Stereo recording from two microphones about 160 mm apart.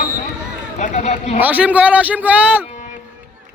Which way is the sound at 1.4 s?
10° right (ahead or behind).